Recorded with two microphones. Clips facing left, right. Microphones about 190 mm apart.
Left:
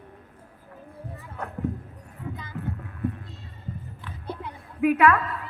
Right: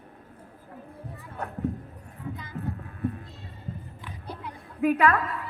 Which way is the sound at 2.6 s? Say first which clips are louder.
Left 1 dB; 35° right (ahead or behind).